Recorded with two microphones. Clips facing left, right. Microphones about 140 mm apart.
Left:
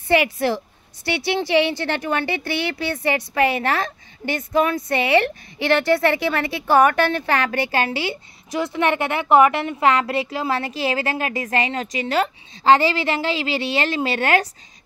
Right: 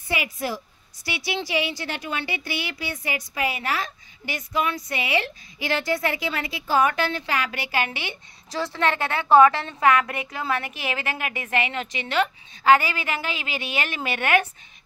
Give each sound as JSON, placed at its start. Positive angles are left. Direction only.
{"t": 0.1, "sound": "a woman's voice", "side_deg": 65}
{"t": 7.9, "sound": "a woman's voice", "side_deg": -20}
{"t": 8.5, "sound": "a woman's voice", "side_deg": 20}